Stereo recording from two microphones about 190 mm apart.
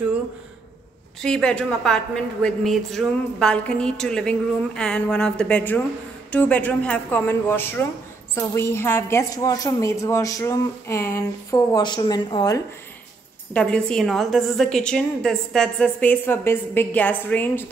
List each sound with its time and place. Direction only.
1.2 s a woman's voice: 5° left (ahead or behind); by 12.6 s 20° left (ahead or behind)
13.5 s a woman's voice: 5° left (ahead or behind)